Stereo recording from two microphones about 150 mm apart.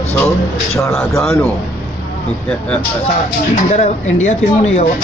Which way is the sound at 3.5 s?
50° left (ahead or behind).